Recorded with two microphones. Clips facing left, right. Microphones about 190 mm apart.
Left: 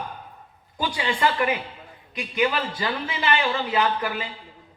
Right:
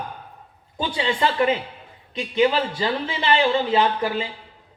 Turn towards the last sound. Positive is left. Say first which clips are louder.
# right 3 dB
turn(degrees=-25)  # may be behind; listen again after turning